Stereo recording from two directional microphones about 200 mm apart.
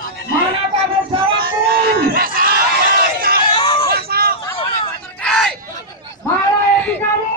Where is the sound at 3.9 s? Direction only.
50° right (ahead or behind).